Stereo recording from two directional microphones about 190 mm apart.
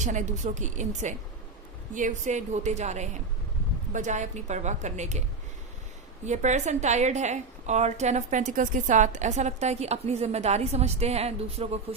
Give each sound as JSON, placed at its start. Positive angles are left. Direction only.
{"t": 0.0, "sound": "a woman's voice", "side_deg": -40}
{"t": 6.2, "sound": "a woman's voice", "side_deg": -40}